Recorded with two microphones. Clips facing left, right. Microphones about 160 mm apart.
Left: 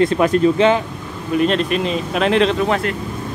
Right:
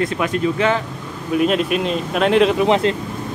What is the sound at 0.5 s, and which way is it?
Speech, 20° left (ahead or behind).